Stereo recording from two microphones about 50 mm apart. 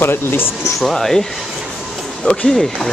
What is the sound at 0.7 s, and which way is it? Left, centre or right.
Speech, centre.